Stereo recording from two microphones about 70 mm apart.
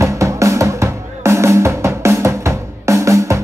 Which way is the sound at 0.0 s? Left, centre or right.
Right.